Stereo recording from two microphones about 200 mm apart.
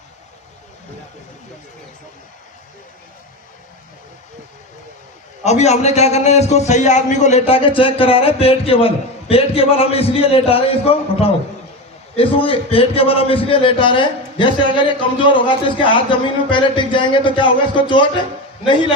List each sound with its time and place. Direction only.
5.4 s a man's voice: 35° left (ahead or behind)